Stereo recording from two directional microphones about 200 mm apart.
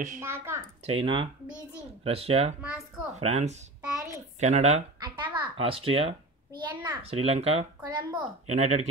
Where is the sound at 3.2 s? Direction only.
35° right (ahead or behind).